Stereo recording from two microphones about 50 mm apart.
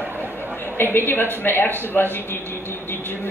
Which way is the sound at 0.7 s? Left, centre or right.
Left.